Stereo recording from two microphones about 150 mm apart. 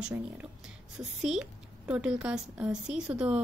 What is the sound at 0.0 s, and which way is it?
A woman's voice, 10° right (ahead or behind).